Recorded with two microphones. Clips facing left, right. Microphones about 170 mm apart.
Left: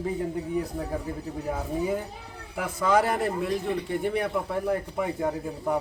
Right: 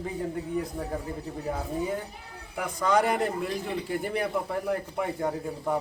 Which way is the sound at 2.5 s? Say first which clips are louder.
Left 1 dB; 5° left (ahead or behind).